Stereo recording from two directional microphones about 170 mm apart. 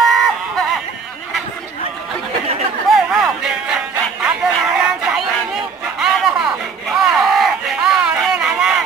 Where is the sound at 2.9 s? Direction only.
Centre (ahead or behind).